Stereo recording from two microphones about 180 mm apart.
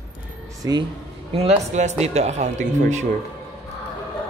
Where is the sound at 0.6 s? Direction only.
25° right (ahead or behind).